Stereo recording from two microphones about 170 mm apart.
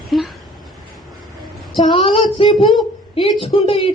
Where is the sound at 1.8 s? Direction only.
30° left (ahead or behind).